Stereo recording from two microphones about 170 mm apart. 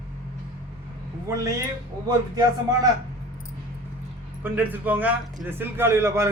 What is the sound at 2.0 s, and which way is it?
Speech, 20° right (ahead or behind).